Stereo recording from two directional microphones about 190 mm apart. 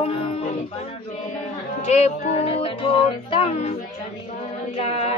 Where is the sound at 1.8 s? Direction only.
35° left (ahead or behind).